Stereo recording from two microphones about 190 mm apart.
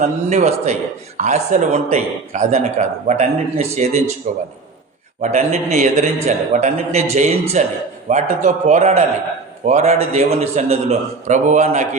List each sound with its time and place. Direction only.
0.0 s speech: 35° right (ahead or behind)
5.2 s speech: 35° right (ahead or behind)